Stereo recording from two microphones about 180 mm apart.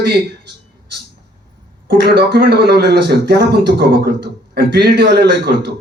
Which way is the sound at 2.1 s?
60° right (ahead or behind).